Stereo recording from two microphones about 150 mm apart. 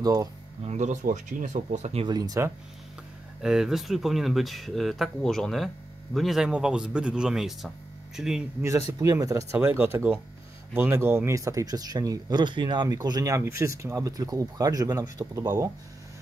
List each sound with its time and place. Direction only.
0.0 s speech: 25° right (ahead or behind)
0.7 s speech: 50° right (ahead or behind)
2.0 s speech: 25° right (ahead or behind)
3.4 s speech: 5° right (ahead or behind)
8.6 s speech: 20° right (ahead or behind)